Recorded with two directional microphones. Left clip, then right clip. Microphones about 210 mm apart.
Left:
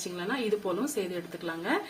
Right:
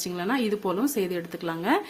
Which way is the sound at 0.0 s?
50° right (ahead or behind).